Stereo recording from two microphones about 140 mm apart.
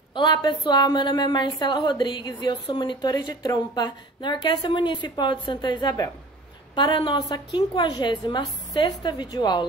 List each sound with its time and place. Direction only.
0.1 s a woman's voice: 30° left (ahead or behind)